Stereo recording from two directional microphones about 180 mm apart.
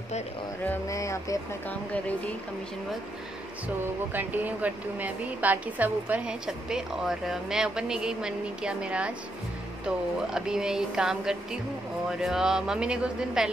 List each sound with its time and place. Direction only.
0.7 s speech: 15° left (ahead or behind)
3.6 s speech: 10° right (ahead or behind)